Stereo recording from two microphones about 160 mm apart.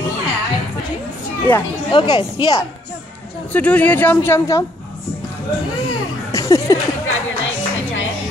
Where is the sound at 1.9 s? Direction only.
30° left (ahead or behind).